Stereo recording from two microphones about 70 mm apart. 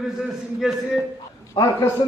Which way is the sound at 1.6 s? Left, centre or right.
Left.